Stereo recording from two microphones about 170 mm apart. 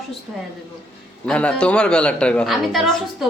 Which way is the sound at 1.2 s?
5° left (ahead or behind).